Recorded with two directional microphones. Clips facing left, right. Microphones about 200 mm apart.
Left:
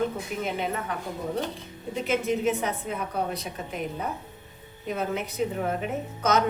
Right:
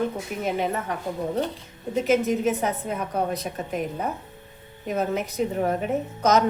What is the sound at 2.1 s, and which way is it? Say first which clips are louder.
Speech: right 3 dB; 40° right (ahead or behind).